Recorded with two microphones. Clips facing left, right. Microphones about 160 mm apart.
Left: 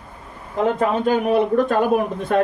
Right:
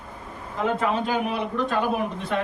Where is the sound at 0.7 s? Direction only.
45° left (ahead or behind).